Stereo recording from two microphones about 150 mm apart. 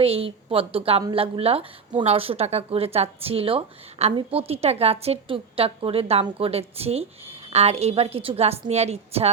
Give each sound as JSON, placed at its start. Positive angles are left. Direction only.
{"t": 0.0, "sound": "a woman's voice", "side_deg": -40}